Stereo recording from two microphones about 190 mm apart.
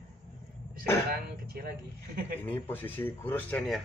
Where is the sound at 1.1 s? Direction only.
55° right (ahead or behind).